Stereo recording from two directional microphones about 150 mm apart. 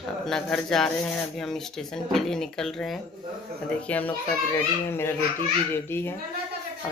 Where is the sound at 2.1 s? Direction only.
5° left (ahead or behind).